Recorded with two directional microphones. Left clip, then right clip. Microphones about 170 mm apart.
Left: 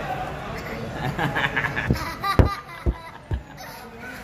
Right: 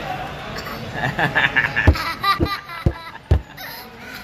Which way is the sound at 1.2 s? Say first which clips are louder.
Right 6 dB; 50° right (ahead or behind).